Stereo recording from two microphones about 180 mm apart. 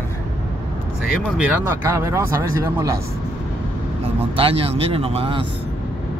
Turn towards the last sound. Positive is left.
turn(degrees=-30)  # may be behind; listen again after turning